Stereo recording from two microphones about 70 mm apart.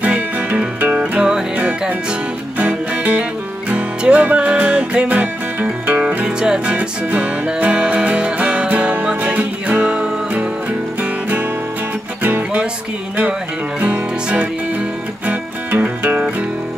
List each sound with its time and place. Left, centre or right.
0.0 s music: centre
6.2 s music: centre; by 12.6 s right
13.7 s music: right